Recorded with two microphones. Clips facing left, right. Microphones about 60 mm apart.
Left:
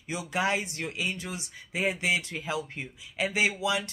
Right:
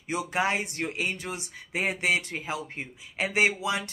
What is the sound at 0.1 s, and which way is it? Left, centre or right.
Speech, right.